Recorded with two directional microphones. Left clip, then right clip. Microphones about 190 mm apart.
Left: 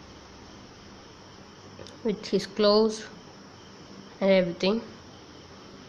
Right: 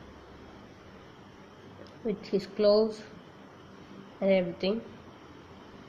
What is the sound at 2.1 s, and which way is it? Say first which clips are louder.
Speech: left 3 dB; 15° left (ahead or behind).